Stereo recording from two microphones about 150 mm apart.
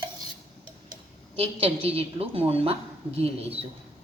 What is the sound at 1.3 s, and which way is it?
A woman's voice, 40° right (ahead or behind).